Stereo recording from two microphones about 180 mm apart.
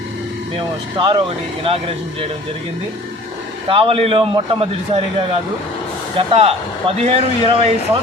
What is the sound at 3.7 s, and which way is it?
Speech, 30° right (ahead or behind).